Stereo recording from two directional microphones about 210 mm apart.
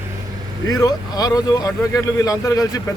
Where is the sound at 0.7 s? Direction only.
15° left (ahead or behind).